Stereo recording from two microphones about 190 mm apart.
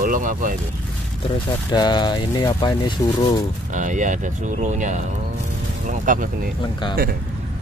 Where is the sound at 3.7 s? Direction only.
40° right (ahead or behind).